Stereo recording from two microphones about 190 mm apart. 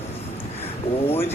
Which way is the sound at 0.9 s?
30° left (ahead or behind).